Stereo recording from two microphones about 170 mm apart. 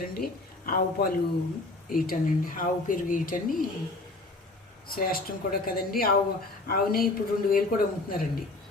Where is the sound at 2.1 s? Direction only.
55° left (ahead or behind).